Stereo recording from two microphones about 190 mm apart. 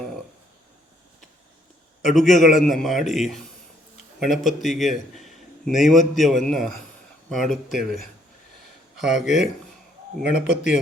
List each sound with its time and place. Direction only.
2.4 s a man's voice: centre (ahead or behind)